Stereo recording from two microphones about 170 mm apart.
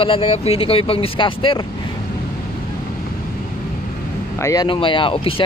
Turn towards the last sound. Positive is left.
turn(degrees=30)  # may be behind; listen again after turning